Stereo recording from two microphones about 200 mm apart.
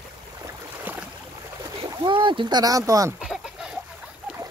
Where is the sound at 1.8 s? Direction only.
25° right (ahead or behind).